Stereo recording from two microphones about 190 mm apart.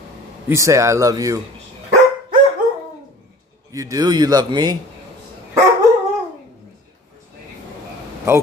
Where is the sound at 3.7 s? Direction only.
20° right (ahead or behind).